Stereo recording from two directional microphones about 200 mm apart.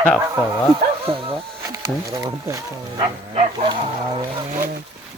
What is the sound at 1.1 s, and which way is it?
Speech, 25° right (ahead or behind).